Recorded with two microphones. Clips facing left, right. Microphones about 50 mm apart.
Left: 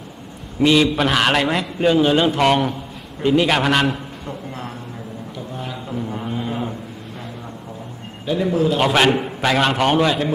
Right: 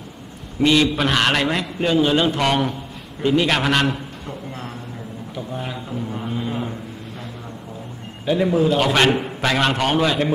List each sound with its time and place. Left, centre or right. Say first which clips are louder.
0.6 s a man's voice: left 2 dB; centre
5.9 s a sound: left 1 dB; centre
8.3 s a man's voice: right 1 dB; centre
8.7 s a man's voice: left 1 dB; centre